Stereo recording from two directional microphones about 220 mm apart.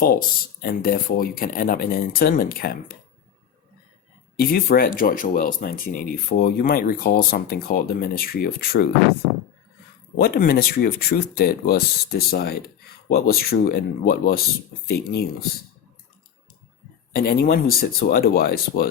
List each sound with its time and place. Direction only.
0.6 s speech: 40° left (ahead or behind)
4.4 s speech: 40° left (ahead or behind)
10.2 s speech: 45° left (ahead or behind)
17.2 s speech: 45° left (ahead or behind)